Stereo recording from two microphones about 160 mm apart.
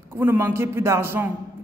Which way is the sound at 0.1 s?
15° right (ahead or behind).